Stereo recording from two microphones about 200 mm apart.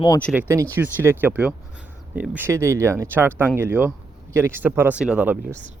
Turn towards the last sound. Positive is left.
turn(degrees=-5)  # may be behind; listen again after turning